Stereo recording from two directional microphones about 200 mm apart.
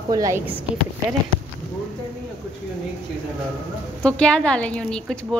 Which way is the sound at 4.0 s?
5° left (ahead or behind).